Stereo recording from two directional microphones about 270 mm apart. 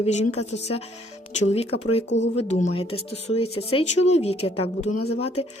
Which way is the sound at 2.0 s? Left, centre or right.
Left.